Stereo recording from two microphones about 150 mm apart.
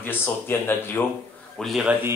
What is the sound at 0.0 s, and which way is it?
Speech, 15° left (ahead or behind).